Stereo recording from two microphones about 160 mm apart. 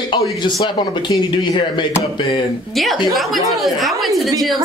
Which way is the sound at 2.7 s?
Centre (ahead or behind).